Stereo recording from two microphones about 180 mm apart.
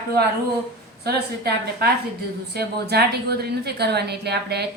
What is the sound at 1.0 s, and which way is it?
A woman's voice, 65° right (ahead or behind).